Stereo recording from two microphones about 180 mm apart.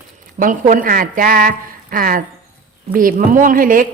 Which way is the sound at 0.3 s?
45° right (ahead or behind).